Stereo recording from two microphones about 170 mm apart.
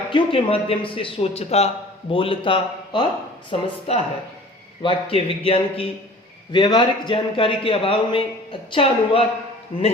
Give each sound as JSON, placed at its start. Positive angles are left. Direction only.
{"t": 0.1, "sound": "a man's voice", "side_deg": 30}